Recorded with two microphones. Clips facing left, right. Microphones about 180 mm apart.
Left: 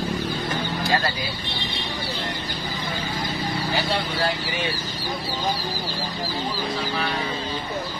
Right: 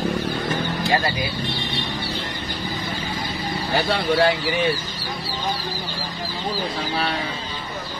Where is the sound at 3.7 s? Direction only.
65° right (ahead or behind).